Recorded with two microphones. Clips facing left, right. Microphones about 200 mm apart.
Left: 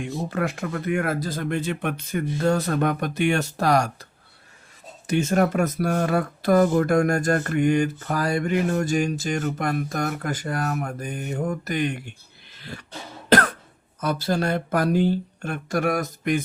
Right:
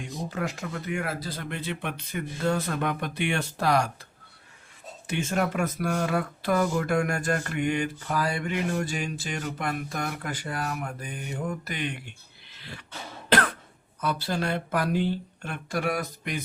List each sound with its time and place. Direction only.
0.3 s speech: 55° left (ahead or behind)
5.0 s speech: 40° left (ahead or behind)
13.3 s cough: 45° left (ahead or behind)
14.0 s speech: 45° left (ahead or behind)